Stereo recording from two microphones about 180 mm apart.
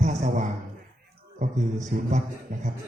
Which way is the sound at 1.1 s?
45° right (ahead or behind).